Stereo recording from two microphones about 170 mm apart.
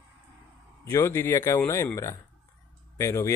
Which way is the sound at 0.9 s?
15° left (ahead or behind).